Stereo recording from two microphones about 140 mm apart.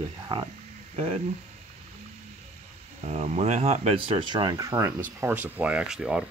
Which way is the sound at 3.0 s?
50° right (ahead or behind).